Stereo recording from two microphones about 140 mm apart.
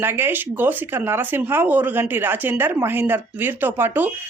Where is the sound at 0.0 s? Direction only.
15° right (ahead or behind).